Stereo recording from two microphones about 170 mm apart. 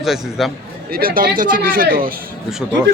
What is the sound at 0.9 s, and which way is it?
Speech, 60° right (ahead or behind).